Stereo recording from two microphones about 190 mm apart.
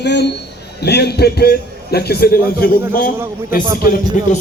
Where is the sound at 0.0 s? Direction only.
65° left (ahead or behind).